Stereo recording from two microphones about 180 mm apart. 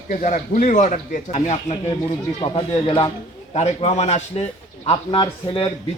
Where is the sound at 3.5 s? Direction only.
40° left (ahead or behind).